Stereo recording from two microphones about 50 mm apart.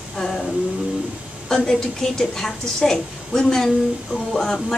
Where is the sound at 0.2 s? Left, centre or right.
Centre.